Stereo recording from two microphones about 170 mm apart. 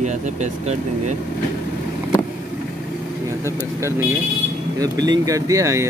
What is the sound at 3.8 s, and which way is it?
Speech, 15° right (ahead or behind).